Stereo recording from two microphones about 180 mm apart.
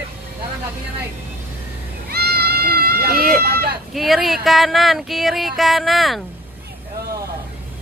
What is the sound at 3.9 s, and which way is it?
Speech, centre (ahead or behind).